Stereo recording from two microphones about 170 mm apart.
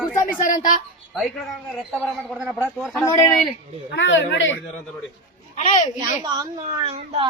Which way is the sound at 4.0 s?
90° left.